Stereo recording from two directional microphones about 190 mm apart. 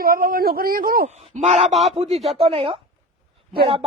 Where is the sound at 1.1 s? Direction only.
35° right (ahead or behind).